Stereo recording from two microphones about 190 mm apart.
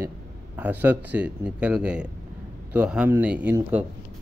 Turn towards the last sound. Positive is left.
turn(degrees=-10)  # may be behind; listen again after turning